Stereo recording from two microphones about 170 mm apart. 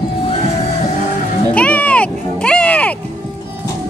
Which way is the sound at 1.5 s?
10° left (ahead or behind).